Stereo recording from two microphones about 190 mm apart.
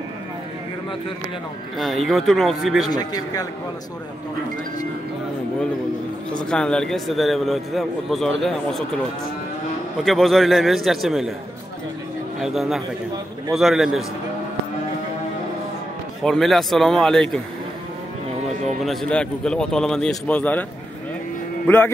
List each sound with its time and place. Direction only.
1.8 s a man's voice: centre (ahead or behind)
2.9 s speech: 20° left (ahead or behind)
6.3 s a man's voice: 5° left (ahead or behind)
10.0 s a man's voice: centre (ahead or behind)
12.4 s a man's voice: centre (ahead or behind)
16.2 s a man's voice: centre (ahead or behind)
18.9 s a man's voice: 5° left (ahead or behind)
21.6 s speech: 10° left (ahead or behind)